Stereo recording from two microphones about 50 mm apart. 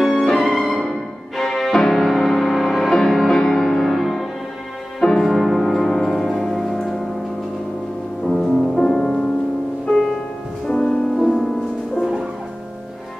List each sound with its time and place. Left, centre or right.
0.0 s music: centre
8.3 s music: centre
8.9 s music: centre
9.8 s music: centre
11.1 s music: centre